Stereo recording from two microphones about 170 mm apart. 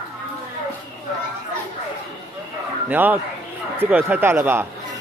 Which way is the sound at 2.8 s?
10° right (ahead or behind).